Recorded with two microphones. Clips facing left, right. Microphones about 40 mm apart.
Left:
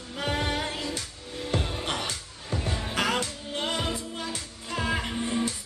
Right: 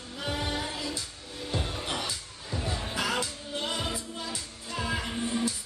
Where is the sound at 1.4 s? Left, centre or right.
Left.